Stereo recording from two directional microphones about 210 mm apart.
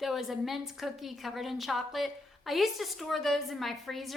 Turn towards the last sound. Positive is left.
turn(degrees=0)  # may be behind; listen again after turning